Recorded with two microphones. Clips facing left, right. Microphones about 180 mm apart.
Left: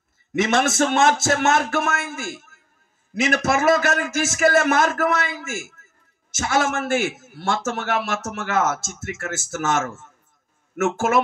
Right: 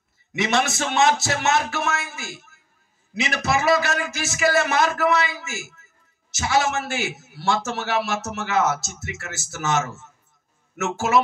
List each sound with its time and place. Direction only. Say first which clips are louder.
0.3 s a man's voice: left 3 dB; 50° left (ahead or behind)